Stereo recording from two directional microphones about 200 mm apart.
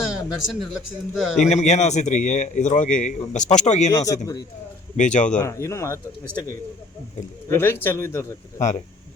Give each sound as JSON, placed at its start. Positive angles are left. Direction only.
{"t": 0.0, "sound": "a sound", "side_deg": 0}
{"t": 1.4, "sound": "a man's voice", "side_deg": 35}
{"t": 3.9, "sound": "speech", "side_deg": 15}
{"t": 4.9, "sound": "a man's voice", "side_deg": 40}
{"t": 5.4, "sound": "speech", "side_deg": 15}
{"t": 7.4, "sound": "speech", "side_deg": 10}
{"t": 8.5, "sound": "a man's voice", "side_deg": 35}